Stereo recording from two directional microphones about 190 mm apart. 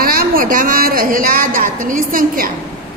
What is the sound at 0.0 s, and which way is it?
A woman's voice, 50° right (ahead or behind).